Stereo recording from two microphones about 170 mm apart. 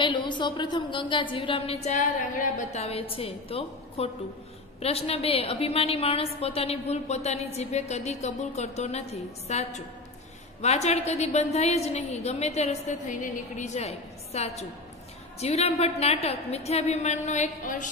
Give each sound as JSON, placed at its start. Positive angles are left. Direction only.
{"t": 0.0, "sound": "a woman's voice", "side_deg": 30}